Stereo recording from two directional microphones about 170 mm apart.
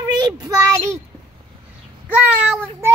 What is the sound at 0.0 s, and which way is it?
Speech, 25° right (ahead or behind).